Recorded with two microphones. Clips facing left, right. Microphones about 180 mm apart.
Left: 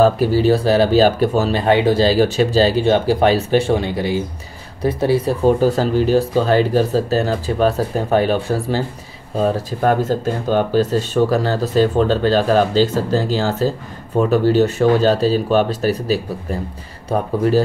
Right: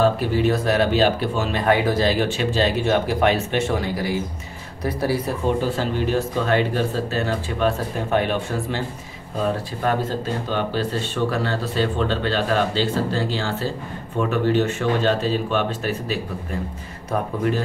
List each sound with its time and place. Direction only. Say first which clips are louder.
0.0 s speech: left 5 dB; 35° left (ahead or behind)
5.6 s speech: left 7 dB; 40° left (ahead or behind)